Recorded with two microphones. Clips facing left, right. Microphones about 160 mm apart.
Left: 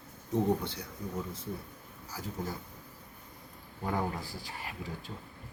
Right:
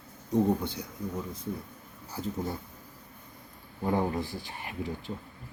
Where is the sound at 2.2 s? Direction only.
30° right (ahead or behind).